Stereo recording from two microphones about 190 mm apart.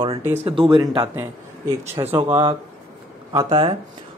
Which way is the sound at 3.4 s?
25° right (ahead or behind).